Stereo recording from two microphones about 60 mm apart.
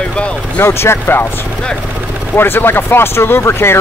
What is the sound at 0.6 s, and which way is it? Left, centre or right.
Speech, left.